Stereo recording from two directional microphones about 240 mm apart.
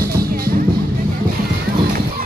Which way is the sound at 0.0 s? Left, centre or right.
Right.